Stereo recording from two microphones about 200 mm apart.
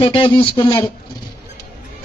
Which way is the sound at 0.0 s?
25° left (ahead or behind).